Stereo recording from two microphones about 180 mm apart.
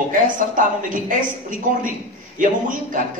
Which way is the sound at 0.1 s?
45° right (ahead or behind).